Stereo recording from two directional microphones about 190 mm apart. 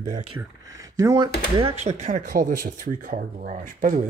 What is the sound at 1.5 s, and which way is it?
Speech, 35° right (ahead or behind).